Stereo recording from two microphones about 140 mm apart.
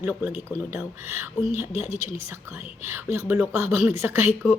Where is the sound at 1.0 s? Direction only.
15° right (ahead or behind).